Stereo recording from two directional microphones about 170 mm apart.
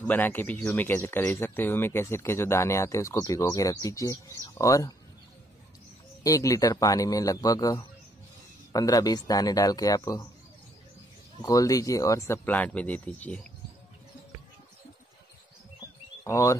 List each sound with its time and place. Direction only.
0.0 s speech: 10° left (ahead or behind)
6.2 s a man's voice: 20° left (ahead or behind)
11.4 s speech: 20° left (ahead or behind)
16.3 s speech: 15° left (ahead or behind)